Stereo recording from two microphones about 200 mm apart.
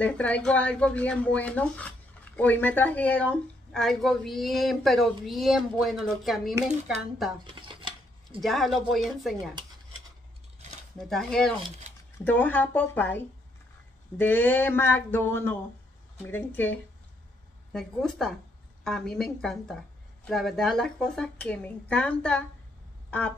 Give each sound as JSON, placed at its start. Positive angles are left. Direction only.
{"t": 0.0, "sound": "speech", "side_deg": 5}
{"t": 7.4, "sound": "dishes", "side_deg": -25}
{"t": 8.4, "sound": "speech", "side_deg": 0}
{"t": 11.0, "sound": "speech", "side_deg": 0}
{"t": 23.0, "sound": "a sound", "side_deg": 5}